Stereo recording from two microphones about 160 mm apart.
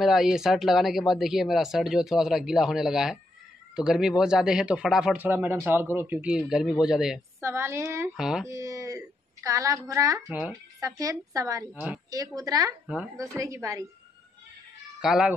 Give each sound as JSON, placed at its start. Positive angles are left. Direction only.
{"t": 0.0, "sound": "speech", "side_deg": 0}
{"t": 6.3, "sound": "speech", "side_deg": -5}
{"t": 7.3, "sound": "speech", "side_deg": -15}
{"t": 8.2, "sound": "speech", "side_deg": -5}
{"t": 8.5, "sound": "a woman's voice", "side_deg": -20}
{"t": 10.2, "sound": "speech", "side_deg": 0}
{"t": 10.8, "sound": "a woman's voice", "side_deg": -20}
{"t": 11.7, "sound": "speech", "side_deg": -5}
{"t": 12.4, "sound": "a woman's voice", "side_deg": -25}
{"t": 12.8, "sound": "speech", "side_deg": -5}
{"t": 13.4, "sound": "a woman's voice", "side_deg": -20}
{"t": 15.0, "sound": "speech", "side_deg": -5}